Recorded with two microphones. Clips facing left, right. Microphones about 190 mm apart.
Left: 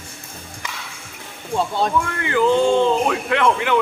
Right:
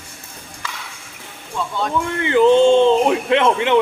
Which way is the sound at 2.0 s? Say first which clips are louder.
Right 5 dB; 20° right (ahead or behind).